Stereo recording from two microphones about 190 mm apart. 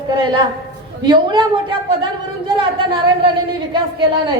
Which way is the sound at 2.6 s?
25° right (ahead or behind).